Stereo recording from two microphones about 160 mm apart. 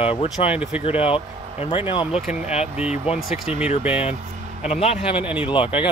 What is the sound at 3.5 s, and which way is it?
Speech, 40° left (ahead or behind).